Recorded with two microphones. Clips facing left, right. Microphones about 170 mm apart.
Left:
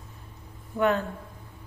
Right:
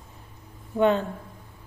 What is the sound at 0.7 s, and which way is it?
Speech, 25° right (ahead or behind).